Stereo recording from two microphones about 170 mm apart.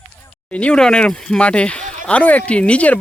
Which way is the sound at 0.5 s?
5° left (ahead or behind).